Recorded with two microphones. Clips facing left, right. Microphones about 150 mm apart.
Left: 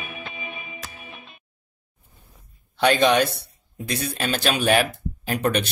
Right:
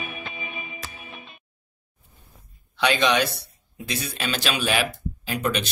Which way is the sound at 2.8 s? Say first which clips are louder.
Left 3 dB; 50° left (ahead or behind).